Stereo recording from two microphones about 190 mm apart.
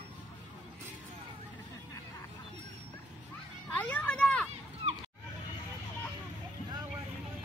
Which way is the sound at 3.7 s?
10° left (ahead or behind).